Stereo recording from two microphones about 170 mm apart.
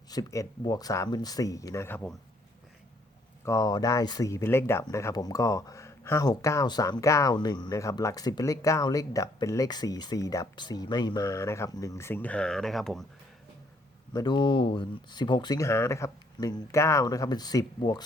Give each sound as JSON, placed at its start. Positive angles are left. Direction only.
{"t": 0.1, "sound": "speech", "side_deg": 20}
{"t": 3.4, "sound": "speech", "side_deg": 20}
{"t": 14.1, "sound": "speech", "side_deg": 25}